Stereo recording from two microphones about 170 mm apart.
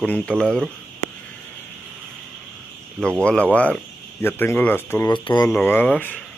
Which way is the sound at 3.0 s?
5° left (ahead or behind).